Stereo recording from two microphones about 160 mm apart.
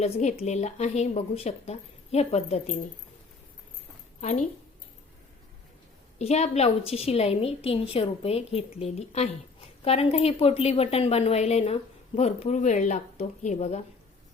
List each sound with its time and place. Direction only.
0.0 s speech: 45° left (ahead or behind)
4.2 s a woman's voice: 50° left (ahead or behind)
6.1 s a woman's voice: 40° left (ahead or behind)